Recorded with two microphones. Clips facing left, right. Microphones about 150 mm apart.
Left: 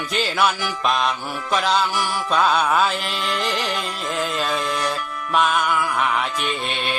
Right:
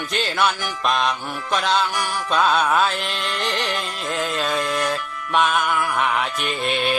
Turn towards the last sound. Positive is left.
turn(degrees=0)  # may be behind; listen again after turning